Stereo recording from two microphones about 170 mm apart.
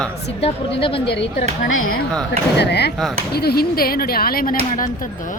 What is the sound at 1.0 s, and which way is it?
Speech, 80° left.